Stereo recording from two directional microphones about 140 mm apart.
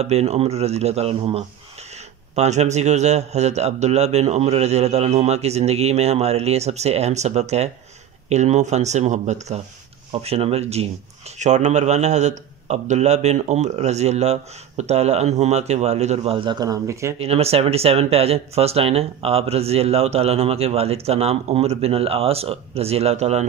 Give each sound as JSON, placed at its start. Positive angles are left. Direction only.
{"t": 0.0, "sound": "speech", "side_deg": -50}
{"t": 10.2, "sound": "speech", "side_deg": -45}
{"t": 16.3, "sound": "a man's voice", "side_deg": -30}
{"t": 17.2, "sound": "speech", "side_deg": -45}